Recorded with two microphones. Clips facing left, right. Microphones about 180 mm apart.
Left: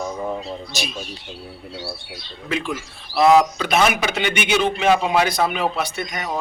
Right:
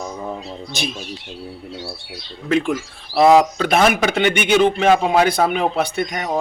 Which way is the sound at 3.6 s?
50° right (ahead or behind).